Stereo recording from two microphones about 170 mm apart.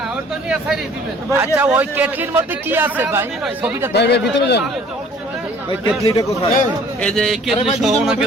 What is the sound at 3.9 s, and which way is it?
Speech, 80° left.